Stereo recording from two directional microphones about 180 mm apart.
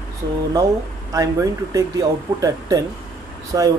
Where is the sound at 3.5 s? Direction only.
20° right (ahead or behind).